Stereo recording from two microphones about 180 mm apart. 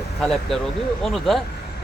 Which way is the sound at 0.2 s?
Centre (ahead or behind).